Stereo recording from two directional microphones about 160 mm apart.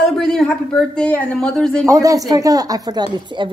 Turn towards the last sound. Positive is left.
turn(degrees=-30)  # may be behind; listen again after turning